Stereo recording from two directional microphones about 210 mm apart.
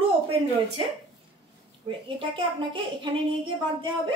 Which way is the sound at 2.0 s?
25° right (ahead or behind).